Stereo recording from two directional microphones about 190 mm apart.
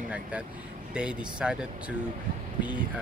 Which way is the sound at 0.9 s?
5° right (ahead or behind).